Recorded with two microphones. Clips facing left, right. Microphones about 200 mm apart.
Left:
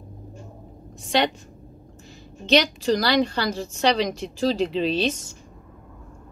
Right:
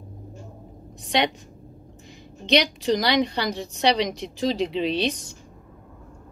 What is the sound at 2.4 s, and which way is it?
A woman's voice, 15° right (ahead or behind).